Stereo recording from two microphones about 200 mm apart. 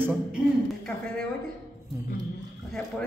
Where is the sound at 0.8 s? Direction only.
5° left (ahead or behind).